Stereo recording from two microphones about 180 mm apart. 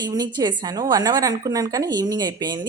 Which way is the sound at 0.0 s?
20° right (ahead or behind).